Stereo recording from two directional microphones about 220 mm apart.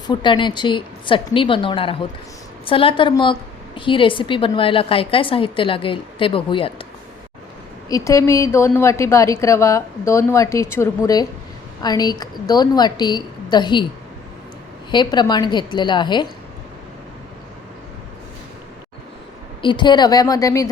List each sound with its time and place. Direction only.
0.1 s a woman's voice: 20° left (ahead or behind)
7.9 s a woman's voice: 15° left (ahead or behind)
14.8 s a woman's voice: 20° left (ahead or behind)
19.6 s a woman's voice: 20° left (ahead or behind)